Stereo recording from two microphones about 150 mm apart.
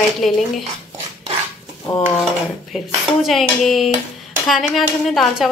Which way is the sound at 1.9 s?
15° left (ahead or behind).